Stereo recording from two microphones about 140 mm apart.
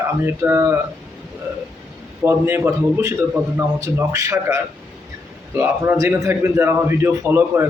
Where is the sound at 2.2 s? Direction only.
15° right (ahead or behind).